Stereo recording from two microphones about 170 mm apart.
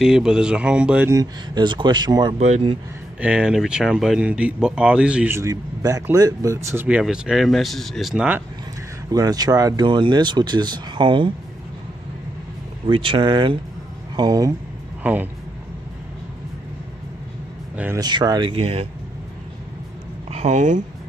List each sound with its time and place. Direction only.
0.0 s speech: 5° right (ahead or behind); by 2.3 s 25° right (ahead or behind)
2.3 s speech: 40° right (ahead or behind)
3.2 s speech: 5° right (ahead or behind)
9.1 s speech: 20° right (ahead or behind)
12.8 s speech: 30° right (ahead or behind)
17.9 s speech: 25° right (ahead or behind)
20.2 s speech: 40° right (ahead or behind)